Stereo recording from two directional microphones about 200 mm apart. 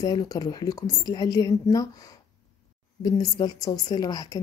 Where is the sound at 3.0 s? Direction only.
20° left (ahead or behind).